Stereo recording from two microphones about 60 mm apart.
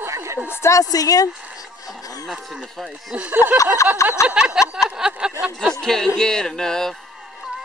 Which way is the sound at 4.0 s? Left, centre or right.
Left.